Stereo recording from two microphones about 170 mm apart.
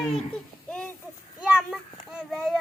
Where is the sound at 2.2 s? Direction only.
Centre (ahead or behind).